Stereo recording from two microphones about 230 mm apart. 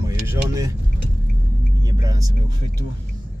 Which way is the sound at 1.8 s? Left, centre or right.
Centre.